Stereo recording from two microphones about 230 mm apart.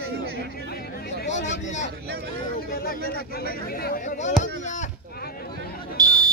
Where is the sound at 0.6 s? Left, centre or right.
Left.